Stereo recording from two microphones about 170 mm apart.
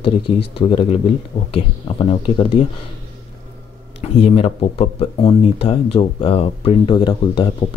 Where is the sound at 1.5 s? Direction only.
30° left (ahead or behind).